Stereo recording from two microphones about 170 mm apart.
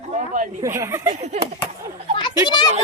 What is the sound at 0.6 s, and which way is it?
Speech, 15° right (ahead or behind).